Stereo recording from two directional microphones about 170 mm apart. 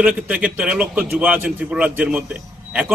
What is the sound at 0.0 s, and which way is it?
A man's voice, 5° right (ahead or behind).